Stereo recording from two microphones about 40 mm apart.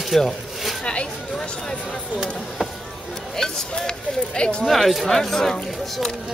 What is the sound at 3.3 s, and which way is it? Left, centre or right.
A man's voice, centre.